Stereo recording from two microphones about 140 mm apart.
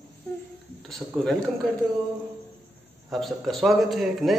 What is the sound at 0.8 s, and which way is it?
Speech, centre (ahead or behind).